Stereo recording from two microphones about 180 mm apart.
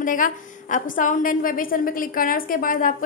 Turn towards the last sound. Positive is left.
turn(degrees=45)  # may be behind; listen again after turning